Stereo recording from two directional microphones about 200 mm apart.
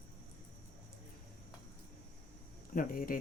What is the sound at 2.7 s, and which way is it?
Speech, 45° left (ahead or behind).